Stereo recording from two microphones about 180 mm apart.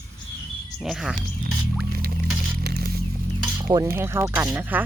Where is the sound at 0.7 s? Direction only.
Centre (ahead or behind).